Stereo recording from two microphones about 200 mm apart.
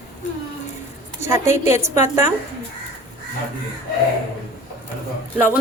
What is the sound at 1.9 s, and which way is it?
Speech, 35° left (ahead or behind).